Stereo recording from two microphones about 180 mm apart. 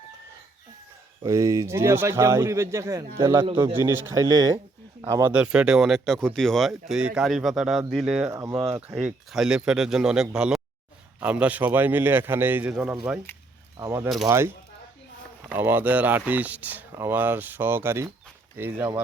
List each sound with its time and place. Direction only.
1.2 s speech: 15° right (ahead or behind)
5.3 s speech: 5° right (ahead or behind)
8.3 s speech: 15° right (ahead or behind)
9.0 s speech: 5° right (ahead or behind)
13.7 s speech: 15° right (ahead or behind)